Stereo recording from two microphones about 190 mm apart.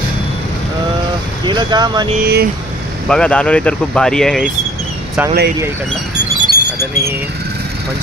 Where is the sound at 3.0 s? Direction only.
5° left (ahead or behind).